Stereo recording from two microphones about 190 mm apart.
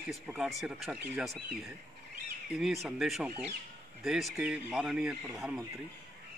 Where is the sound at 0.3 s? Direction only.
Centre (ahead or behind).